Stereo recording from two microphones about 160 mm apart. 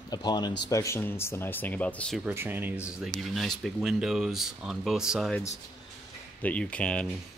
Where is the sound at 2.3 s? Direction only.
15° right (ahead or behind).